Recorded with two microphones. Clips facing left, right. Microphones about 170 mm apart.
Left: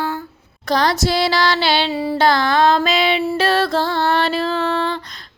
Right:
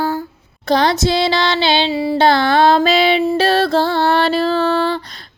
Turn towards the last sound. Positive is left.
turn(degrees=-35)  # may be behind; listen again after turning